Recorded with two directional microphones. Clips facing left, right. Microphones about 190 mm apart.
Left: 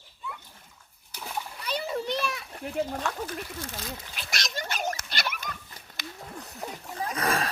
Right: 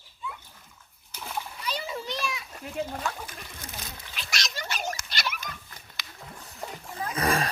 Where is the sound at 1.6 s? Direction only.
55° left (ahead or behind).